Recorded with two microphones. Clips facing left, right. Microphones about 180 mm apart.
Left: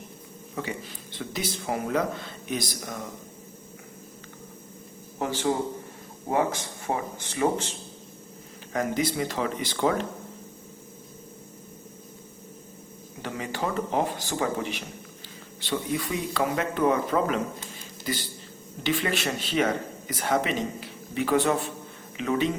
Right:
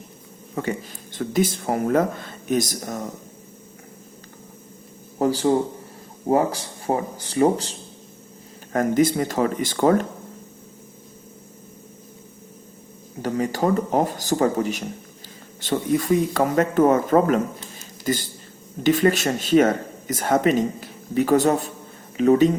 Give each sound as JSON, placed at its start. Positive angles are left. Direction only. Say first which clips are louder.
{"t": 0.5, "sound": "speech", "louder": "right 7 dB", "side_deg": -50}
{"t": 5.2, "sound": "speech", "louder": "right 7 dB", "side_deg": -35}
{"t": 13.2, "sound": "speech", "louder": "right 9 dB", "side_deg": -40}